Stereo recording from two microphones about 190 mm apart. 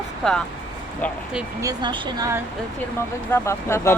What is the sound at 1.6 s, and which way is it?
Speech, 20° right (ahead or behind).